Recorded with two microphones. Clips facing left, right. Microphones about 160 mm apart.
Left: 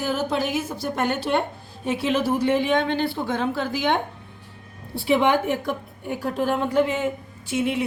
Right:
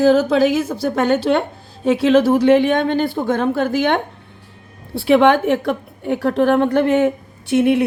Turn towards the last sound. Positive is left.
turn(degrees=-65)  # may be behind; listen again after turning